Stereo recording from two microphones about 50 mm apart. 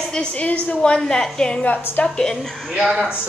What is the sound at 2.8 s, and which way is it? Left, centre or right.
Speech, right.